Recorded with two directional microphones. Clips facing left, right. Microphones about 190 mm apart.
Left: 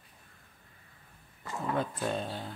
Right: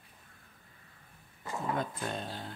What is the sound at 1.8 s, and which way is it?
Speech, 5° left (ahead or behind).